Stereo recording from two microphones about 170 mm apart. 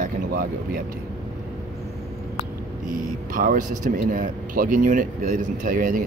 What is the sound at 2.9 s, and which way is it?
Speech, 55° right (ahead or behind).